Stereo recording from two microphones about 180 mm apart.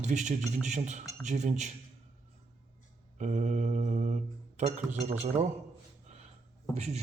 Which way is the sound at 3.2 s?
40° right (ahead or behind).